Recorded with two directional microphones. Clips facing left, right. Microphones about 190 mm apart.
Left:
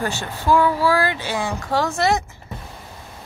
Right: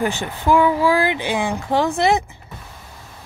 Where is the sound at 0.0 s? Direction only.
15° right (ahead or behind).